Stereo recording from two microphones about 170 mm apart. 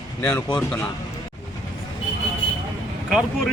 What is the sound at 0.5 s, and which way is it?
Speech, 10° left (ahead or behind).